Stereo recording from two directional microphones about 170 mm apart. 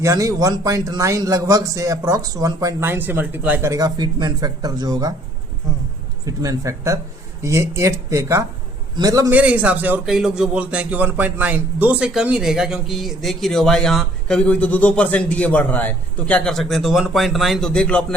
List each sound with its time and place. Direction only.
0.0 s a man's voice: 20° right (ahead or behind)
6.2 s a man's voice: 20° right (ahead or behind)
9.4 s speech: 10° right (ahead or behind)